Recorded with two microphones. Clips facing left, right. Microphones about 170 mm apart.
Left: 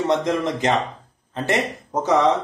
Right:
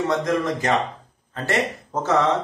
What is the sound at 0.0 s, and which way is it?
A man's voice, 20° left (ahead or behind).